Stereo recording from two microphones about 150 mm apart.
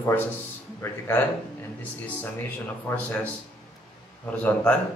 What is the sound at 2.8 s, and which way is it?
Speech, 10° left (ahead or behind).